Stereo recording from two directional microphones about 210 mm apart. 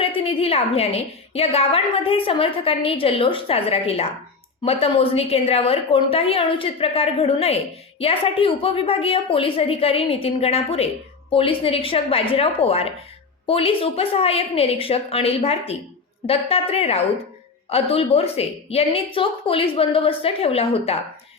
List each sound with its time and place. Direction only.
0.2 s a woman's voice: 25° left (ahead or behind)